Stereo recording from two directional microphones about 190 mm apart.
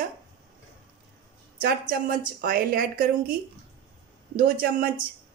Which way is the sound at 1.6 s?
50° right (ahead or behind).